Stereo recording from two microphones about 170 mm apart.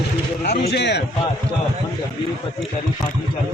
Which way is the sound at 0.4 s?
70° left (ahead or behind).